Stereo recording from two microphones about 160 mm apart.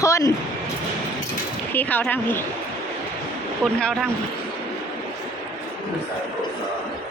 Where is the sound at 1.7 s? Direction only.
10° left (ahead or behind).